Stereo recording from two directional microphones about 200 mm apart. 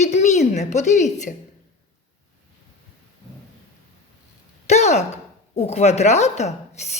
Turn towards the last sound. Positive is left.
turn(degrees=35)  # may be behind; listen again after turning